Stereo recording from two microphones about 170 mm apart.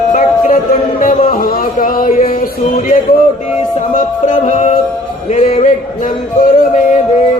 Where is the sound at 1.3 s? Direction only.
60° left (ahead or behind).